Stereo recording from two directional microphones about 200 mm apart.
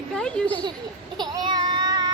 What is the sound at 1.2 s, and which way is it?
Child singing, 20° right (ahead or behind).